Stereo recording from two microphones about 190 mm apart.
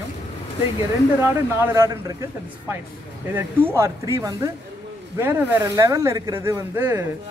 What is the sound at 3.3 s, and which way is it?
Speech, 15° right (ahead or behind).